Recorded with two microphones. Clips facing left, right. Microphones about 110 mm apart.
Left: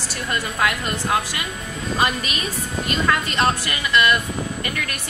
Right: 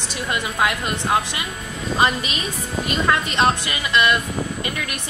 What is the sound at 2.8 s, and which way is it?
Speech, 20° right (ahead or behind).